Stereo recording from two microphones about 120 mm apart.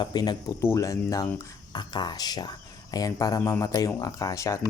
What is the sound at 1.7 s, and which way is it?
Speech, 40° left (ahead or behind).